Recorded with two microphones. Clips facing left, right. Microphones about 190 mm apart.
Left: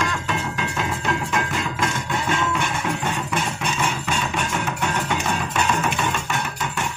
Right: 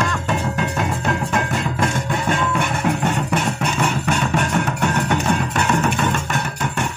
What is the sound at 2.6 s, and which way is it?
Music, 65° right (ahead or behind).